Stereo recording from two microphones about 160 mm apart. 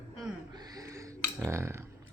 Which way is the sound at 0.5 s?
25° right (ahead or behind).